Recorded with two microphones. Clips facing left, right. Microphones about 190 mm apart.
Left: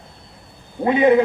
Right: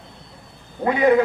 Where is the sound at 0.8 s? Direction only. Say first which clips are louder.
Left 2 dB; 25° left (ahead or behind).